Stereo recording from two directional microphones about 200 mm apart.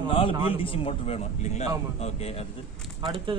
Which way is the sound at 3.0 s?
25° right (ahead or behind).